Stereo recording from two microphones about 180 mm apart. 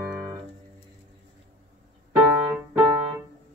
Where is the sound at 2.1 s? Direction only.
15° right (ahead or behind).